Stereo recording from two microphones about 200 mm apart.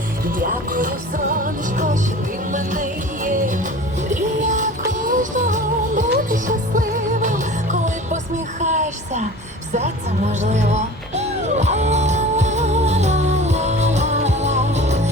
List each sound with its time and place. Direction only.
0.3 s music: 45° right (ahead or behind)
11.2 s music: 35° right (ahead or behind)